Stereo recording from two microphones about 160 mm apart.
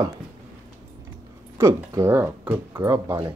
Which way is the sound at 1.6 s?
20° right (ahead or behind).